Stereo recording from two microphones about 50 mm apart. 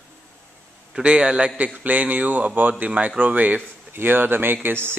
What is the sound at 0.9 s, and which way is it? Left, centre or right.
Speech, centre.